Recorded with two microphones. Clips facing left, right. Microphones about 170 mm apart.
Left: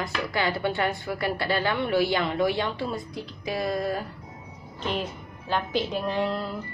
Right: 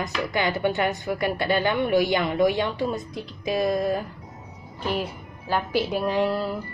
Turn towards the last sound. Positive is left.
turn(degrees=-10)  # may be behind; listen again after turning